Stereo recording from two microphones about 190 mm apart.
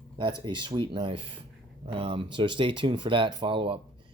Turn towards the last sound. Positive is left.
turn(degrees=-25)  # may be behind; listen again after turning